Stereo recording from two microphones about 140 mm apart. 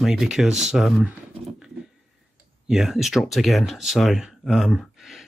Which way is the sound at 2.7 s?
5° right (ahead or behind).